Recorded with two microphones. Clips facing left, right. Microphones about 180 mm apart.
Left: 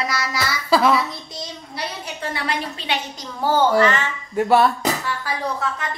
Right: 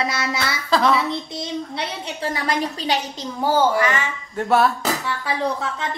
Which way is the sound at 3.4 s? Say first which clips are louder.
Left 2 dB; 10° right (ahead or behind).